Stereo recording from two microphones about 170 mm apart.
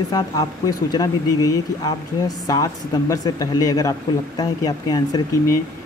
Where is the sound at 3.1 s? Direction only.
20° left (ahead or behind).